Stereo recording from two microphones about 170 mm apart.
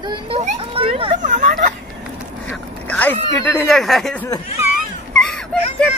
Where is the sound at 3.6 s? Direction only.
Centre (ahead or behind).